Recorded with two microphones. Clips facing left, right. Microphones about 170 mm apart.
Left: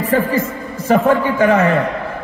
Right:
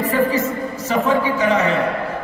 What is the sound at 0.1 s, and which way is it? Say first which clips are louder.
A man's voice: left 3 dB; 55° left (ahead or behind).